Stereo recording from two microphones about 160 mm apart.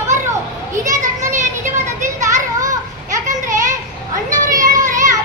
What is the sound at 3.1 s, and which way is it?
Children playing, 50° right (ahead or behind).